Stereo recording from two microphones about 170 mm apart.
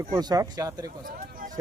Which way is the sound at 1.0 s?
55° right (ahead or behind).